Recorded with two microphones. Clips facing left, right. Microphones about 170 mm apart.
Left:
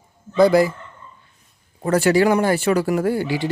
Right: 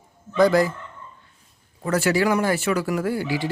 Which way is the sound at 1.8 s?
30° left (ahead or behind).